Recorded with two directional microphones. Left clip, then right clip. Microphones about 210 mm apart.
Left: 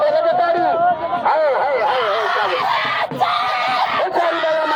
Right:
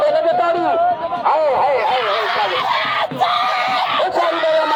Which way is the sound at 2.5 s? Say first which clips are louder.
Even; 5° left (ahead or behind).